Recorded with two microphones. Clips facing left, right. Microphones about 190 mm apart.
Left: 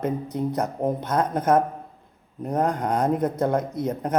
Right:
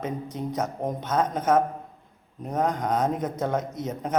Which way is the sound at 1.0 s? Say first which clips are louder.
Even; 10° left (ahead or behind).